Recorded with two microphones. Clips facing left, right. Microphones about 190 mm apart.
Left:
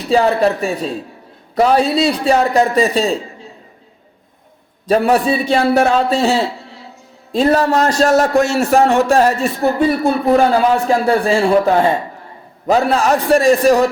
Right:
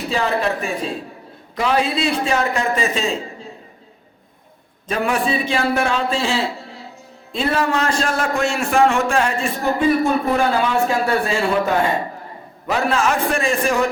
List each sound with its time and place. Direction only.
0.1 s a man's voice: 35° left (ahead or behind)
4.9 s a man's voice: 35° left (ahead or behind)